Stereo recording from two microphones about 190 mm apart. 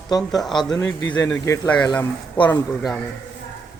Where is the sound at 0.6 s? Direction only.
20° left (ahead or behind).